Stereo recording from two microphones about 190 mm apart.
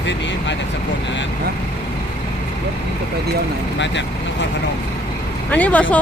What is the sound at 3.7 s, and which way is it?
Speech, 70° left (ahead or behind).